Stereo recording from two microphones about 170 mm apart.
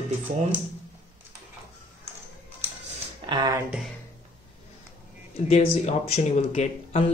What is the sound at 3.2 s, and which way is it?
Speech, 25° right (ahead or behind).